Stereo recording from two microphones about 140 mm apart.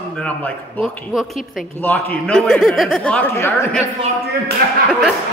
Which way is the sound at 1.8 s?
10° left (ahead or behind).